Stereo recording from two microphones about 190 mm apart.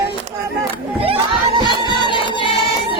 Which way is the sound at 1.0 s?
30° right (ahead or behind).